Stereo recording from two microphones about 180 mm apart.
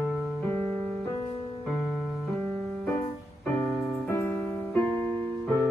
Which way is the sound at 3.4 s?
10° left (ahead or behind).